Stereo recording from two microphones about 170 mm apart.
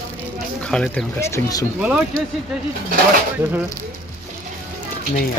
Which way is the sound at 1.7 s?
10° right (ahead or behind).